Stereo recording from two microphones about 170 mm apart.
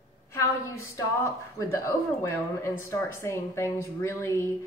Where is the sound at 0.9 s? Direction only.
15° left (ahead or behind).